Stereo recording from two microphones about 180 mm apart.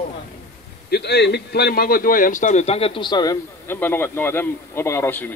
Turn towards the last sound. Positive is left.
turn(degrees=10)  # may be behind; listen again after turning